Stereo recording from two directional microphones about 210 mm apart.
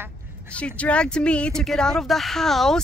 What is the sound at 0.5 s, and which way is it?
Speech, 5° left (ahead or behind).